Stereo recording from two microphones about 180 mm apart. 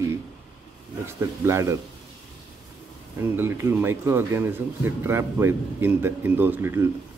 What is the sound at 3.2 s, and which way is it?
Speech, 15° right (ahead or behind).